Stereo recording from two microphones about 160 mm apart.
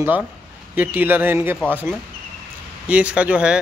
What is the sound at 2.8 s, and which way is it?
Speech, 10° right (ahead or behind).